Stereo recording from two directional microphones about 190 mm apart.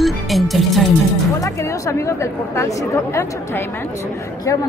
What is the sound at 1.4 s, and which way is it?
A woman's voice, 15° left (ahead or behind).